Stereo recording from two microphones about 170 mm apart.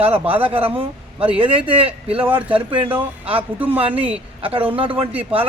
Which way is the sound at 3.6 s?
10° right (ahead or behind).